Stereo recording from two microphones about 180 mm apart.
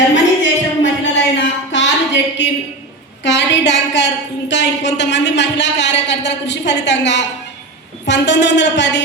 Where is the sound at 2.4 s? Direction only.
80° left.